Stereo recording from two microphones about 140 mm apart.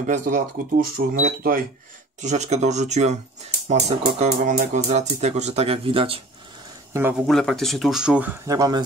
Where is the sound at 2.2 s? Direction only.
55° right (ahead or behind).